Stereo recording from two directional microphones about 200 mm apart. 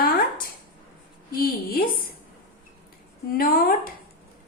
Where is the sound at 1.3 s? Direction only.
50° left (ahead or behind).